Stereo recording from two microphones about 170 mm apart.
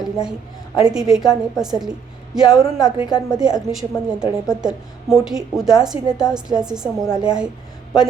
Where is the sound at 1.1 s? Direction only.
5° right (ahead or behind).